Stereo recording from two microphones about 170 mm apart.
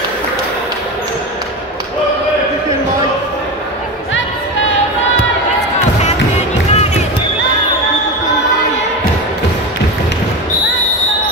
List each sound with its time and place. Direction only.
6.0 s music: 40° left (ahead or behind)